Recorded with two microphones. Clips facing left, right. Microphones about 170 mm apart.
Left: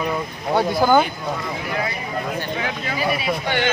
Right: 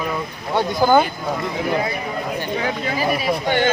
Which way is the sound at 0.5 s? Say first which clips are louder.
Even; centre (ahead or behind).